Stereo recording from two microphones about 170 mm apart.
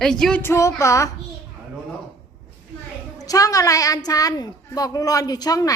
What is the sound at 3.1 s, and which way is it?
A woman's voice, 20° left (ahead or behind).